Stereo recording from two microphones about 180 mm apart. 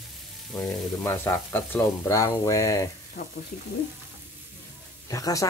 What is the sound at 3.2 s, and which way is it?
Speech, 55° left (ahead or behind).